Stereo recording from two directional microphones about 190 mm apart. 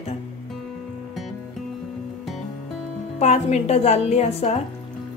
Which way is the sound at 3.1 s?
35° left (ahead or behind).